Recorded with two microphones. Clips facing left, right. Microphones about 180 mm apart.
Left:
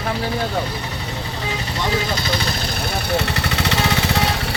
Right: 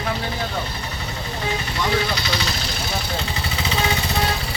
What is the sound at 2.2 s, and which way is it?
Vehicle, 50° left (ahead or behind).